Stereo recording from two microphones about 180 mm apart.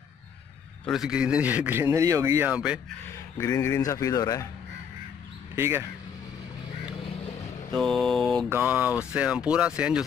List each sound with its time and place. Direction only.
0.8 s a man's voice: centre (ahead or behind)
3.3 s speech: 15° left (ahead or behind)
5.6 s a man's voice: 15° right (ahead or behind)
7.7 s mantra: centre (ahead or behind)
8.5 s a man's voice: 10° right (ahead or behind)